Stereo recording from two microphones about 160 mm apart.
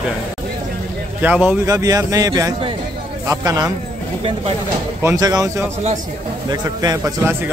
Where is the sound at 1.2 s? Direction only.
10° right (ahead or behind).